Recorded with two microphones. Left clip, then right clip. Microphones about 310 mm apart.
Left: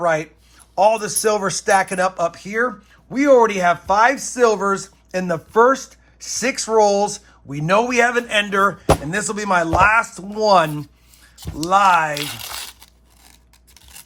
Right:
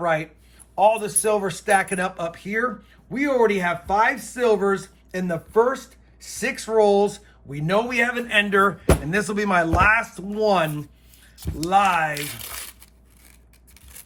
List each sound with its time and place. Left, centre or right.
0.0 s speech: centre
1.4 s speech: centre